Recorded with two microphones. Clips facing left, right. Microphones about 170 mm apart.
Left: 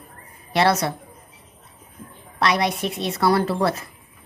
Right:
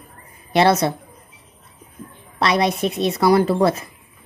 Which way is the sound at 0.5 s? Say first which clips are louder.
Right 4 dB; 20° right (ahead or behind).